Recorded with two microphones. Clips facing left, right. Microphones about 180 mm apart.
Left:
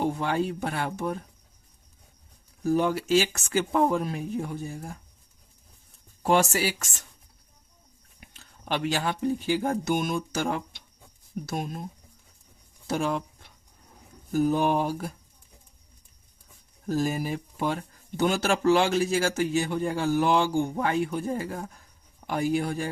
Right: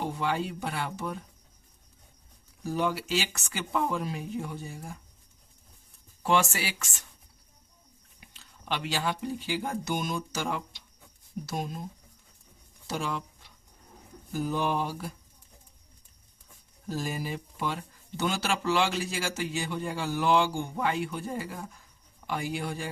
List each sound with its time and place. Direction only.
0.0 s speech: 45° left (ahead or behind)
2.6 s speech: 45° left (ahead or behind)
6.2 s speech: 40° left (ahead or behind)
8.3 s speech: 50° left (ahead or behind)
12.9 s speech: 50° left (ahead or behind)
16.9 s speech: 45° left (ahead or behind)